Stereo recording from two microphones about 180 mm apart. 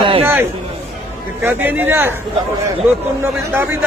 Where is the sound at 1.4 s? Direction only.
10° right (ahead or behind).